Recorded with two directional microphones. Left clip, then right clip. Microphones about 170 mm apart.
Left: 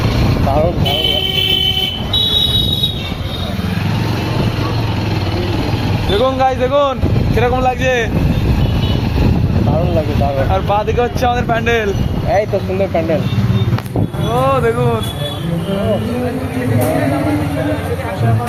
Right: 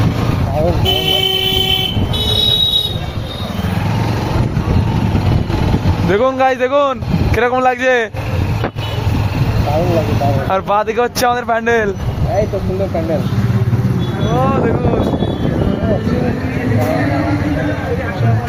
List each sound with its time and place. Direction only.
6.1 s a sound: 85° right
7.3 s speech: 70° right (ahead or behind)
10.5 s speech: 60° right (ahead or behind)
11.5 s speech: 50° right (ahead or behind)